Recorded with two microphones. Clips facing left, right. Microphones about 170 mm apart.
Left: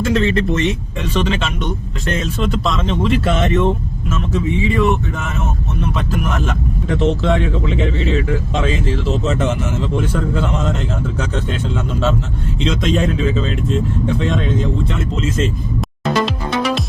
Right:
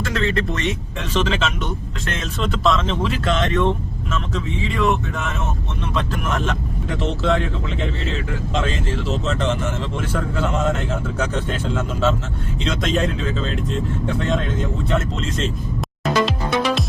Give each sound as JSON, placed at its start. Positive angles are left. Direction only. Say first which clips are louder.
{"t": 0.1, "sound": "speech", "louder": "left 5 dB", "side_deg": 0}